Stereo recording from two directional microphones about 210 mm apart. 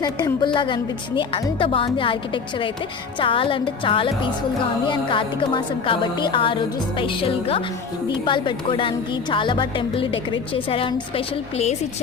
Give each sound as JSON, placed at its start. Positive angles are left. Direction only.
{"t": 0.0, "sound": "a woman's voice", "side_deg": 20}